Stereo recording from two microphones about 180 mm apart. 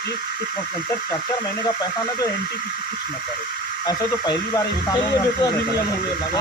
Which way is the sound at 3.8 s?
20° left (ahead or behind).